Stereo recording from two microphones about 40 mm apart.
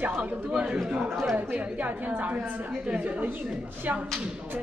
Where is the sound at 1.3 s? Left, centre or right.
Right.